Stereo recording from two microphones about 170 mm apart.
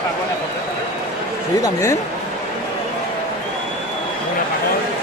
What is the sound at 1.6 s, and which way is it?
Speech, 20° left (ahead or behind).